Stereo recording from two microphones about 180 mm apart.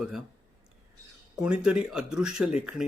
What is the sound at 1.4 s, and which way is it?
Speech, 5° right (ahead or behind).